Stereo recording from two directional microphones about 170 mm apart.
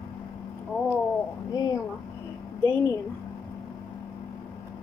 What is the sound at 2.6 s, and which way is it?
Speech, 15° left (ahead or behind).